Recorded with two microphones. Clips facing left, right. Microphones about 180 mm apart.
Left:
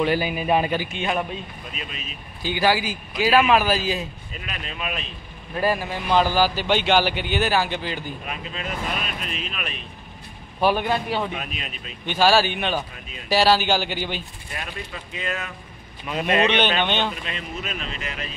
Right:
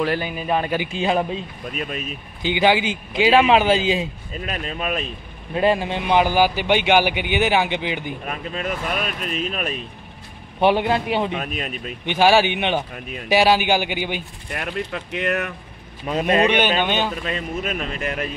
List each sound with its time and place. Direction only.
0.0 s speech: 5° left (ahead or behind)
0.9 s speech: 30° right (ahead or behind)
1.7 s speech: 50° right (ahead or behind)
2.4 s speech: 20° right (ahead or behind)
4.3 s speech: 40° right (ahead or behind)
5.5 s a man's voice: 25° right (ahead or behind)
8.3 s speech: 45° right (ahead or behind)
10.6 s speech: 25° right (ahead or behind)
11.3 s speech: 45° right (ahead or behind)
12.1 s a man's voice: 15° right (ahead or behind)
14.5 s speech: 65° right (ahead or behind)
16.1 s speech: 35° right (ahead or behind)
16.4 s a man's voice: 10° right (ahead or behind)
17.2 s speech: 45° right (ahead or behind)